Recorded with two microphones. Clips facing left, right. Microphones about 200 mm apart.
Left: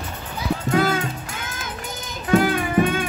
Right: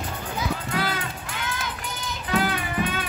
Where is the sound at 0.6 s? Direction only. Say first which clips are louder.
Left 8 dB; 45° left (ahead or behind).